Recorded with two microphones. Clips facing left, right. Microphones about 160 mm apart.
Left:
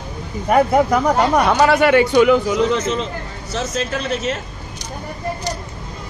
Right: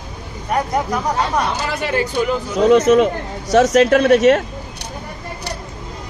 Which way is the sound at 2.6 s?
65° right (ahead or behind).